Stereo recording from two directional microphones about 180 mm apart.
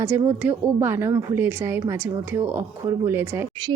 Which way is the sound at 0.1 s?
10° right (ahead or behind).